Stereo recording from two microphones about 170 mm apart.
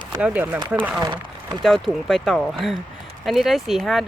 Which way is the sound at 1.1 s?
25° right (ahead or behind).